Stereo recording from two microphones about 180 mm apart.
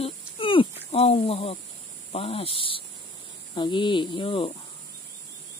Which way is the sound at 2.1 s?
30° left (ahead or behind).